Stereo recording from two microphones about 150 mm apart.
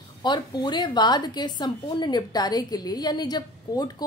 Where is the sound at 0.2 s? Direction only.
30° left (ahead or behind).